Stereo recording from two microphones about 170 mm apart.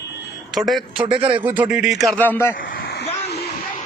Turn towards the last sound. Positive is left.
turn(degrees=70)  # may be behind; listen again after turning